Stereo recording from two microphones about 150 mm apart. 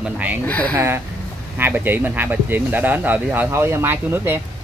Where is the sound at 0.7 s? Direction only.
15° right (ahead or behind).